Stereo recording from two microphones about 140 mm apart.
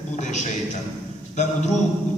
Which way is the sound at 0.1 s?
60° left (ahead or behind).